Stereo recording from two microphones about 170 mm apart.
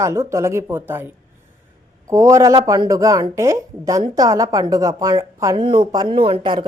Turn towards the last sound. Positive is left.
turn(degrees=-30)  # may be behind; listen again after turning